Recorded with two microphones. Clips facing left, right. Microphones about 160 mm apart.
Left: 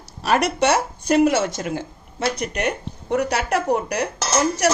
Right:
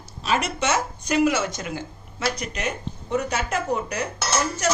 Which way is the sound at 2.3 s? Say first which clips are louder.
Left 5 dB; 60° left (ahead or behind).